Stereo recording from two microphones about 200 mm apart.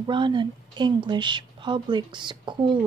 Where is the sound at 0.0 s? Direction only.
25° right (ahead or behind).